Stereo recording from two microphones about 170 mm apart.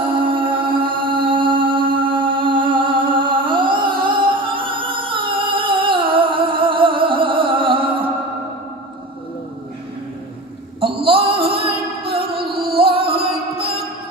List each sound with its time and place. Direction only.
0.1 s music: 30° right (ahead or behind)
10.8 s a sound: 30° right (ahead or behind)
12.4 s music: 65° right (ahead or behind)
12.7 s music: 30° right (ahead or behind)